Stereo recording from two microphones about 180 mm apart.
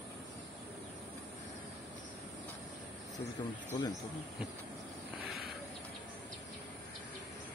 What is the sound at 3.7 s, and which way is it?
Speech, 20° left (ahead or behind).